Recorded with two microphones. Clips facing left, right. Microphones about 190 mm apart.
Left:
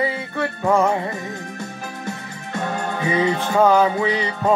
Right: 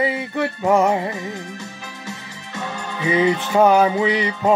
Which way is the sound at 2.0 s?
55° left (ahead or behind).